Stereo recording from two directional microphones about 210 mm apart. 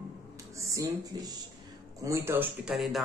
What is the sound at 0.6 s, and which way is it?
Speech, 15° right (ahead or behind).